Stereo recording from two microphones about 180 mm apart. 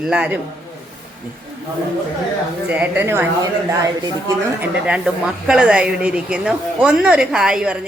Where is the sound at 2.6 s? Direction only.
10° right (ahead or behind).